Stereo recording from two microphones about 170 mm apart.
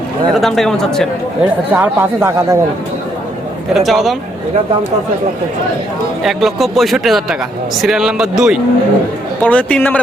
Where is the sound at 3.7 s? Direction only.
Centre (ahead or behind).